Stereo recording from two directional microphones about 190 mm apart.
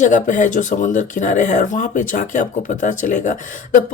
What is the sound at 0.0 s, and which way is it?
A woman's voice, 40° left (ahead or behind).